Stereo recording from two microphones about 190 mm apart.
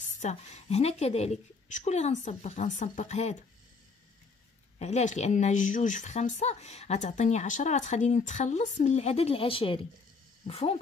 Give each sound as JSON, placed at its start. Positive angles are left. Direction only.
{"t": 0.2, "sound": "speech", "side_deg": 35}
{"t": 4.7, "sound": "speech", "side_deg": 35}